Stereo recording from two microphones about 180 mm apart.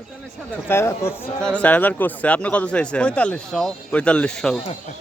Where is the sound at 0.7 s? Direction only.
15° left (ahead or behind).